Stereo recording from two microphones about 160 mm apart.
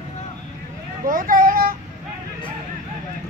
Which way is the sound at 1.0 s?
60° right (ahead or behind).